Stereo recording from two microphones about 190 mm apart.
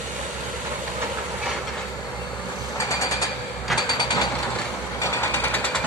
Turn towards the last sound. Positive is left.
turn(degrees=10)  # may be behind; listen again after turning